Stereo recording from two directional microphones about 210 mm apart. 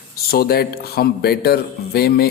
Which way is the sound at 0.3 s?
45° left (ahead or behind).